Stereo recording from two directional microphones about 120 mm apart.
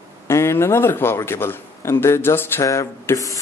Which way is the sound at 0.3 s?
20° left (ahead or behind).